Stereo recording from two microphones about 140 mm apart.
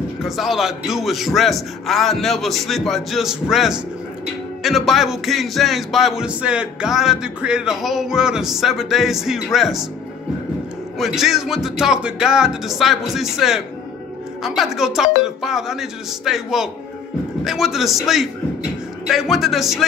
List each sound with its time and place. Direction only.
0.2 s music: centre (ahead or behind)
11.0 s music: centre (ahead or behind)